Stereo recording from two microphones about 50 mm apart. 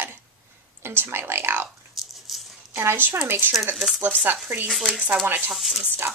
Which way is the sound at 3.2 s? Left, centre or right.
Right.